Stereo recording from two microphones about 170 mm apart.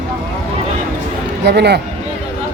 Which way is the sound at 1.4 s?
75° right (ahead or behind).